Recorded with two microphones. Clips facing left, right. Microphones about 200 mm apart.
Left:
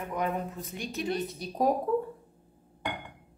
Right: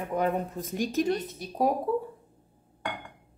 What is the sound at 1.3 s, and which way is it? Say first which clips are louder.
Speech: even; 5° right (ahead or behind).